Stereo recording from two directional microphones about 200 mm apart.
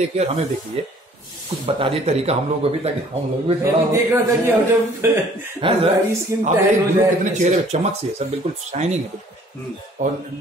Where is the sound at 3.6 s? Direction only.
15° right (ahead or behind).